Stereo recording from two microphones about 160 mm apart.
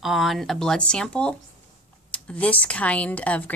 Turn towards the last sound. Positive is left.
turn(degrees=10)  # may be behind; listen again after turning